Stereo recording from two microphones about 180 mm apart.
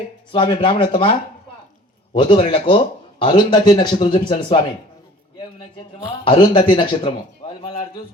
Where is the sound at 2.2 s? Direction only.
25° left (ahead or behind).